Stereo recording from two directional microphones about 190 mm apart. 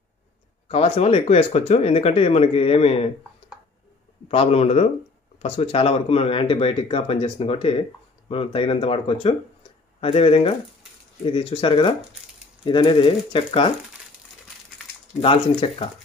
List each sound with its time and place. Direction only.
0.7 s speech: 30° left (ahead or behind)
4.3 s speech: 30° left (ahead or behind)
15.2 s speech: 30° left (ahead or behind)